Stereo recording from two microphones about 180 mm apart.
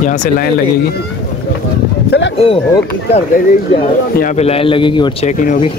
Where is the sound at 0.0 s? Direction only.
45° left (ahead or behind).